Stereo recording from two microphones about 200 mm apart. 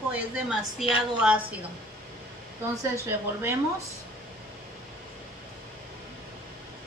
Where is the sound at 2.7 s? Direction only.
15° right (ahead or behind).